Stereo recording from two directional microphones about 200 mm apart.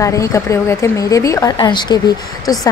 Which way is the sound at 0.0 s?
15° left (ahead or behind).